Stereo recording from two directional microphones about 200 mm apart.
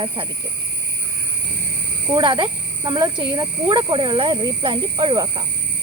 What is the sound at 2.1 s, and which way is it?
Speech, 25° right (ahead or behind).